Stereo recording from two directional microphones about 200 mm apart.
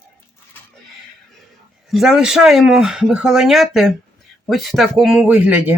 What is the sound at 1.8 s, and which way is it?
Speech, centre (ahead or behind).